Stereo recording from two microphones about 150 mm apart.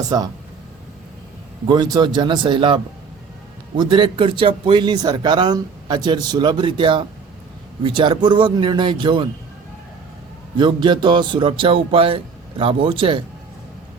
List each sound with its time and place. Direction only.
1.6 s a man's voice: 30° right (ahead or behind)
10.6 s a man's voice: 30° right (ahead or behind)